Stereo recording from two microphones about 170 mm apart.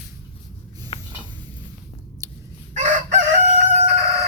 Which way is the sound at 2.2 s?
20° right (ahead or behind).